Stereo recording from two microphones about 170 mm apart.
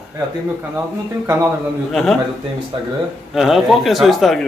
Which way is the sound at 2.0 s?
Centre (ahead or behind).